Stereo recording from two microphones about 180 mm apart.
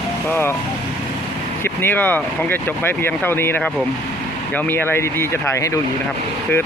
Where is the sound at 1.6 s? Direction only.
10° left (ahead or behind).